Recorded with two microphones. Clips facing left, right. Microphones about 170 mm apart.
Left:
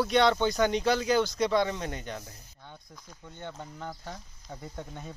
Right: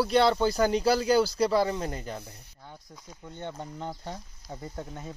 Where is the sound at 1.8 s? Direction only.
Centre (ahead or behind).